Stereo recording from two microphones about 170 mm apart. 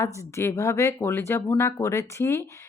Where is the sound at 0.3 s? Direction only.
15° left (ahead or behind).